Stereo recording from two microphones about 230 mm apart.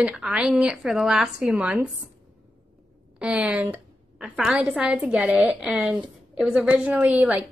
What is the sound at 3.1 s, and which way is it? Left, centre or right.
A woman's voice, centre.